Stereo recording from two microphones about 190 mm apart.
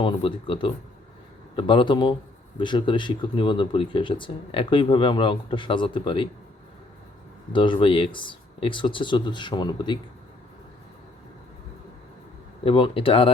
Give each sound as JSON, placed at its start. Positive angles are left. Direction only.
{"t": 0.0, "sound": "speech", "side_deg": 25}
{"t": 7.5, "sound": "speech", "side_deg": 25}
{"t": 12.6, "sound": "speech", "side_deg": 30}